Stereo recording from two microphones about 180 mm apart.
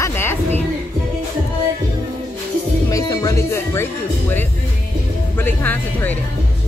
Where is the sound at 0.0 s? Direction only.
15° left (ahead or behind).